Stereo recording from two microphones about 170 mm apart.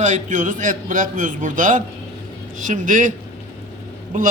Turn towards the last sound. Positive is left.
turn(degrees=-50)  # may be behind; listen again after turning